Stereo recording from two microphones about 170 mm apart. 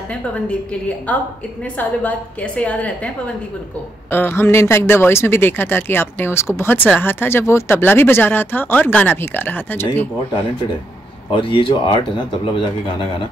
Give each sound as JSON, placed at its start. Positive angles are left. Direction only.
{"t": 0.1, "sound": "speech", "side_deg": 5}
{"t": 4.1, "sound": "speech", "side_deg": 15}
{"t": 11.3, "sound": "speech", "side_deg": 30}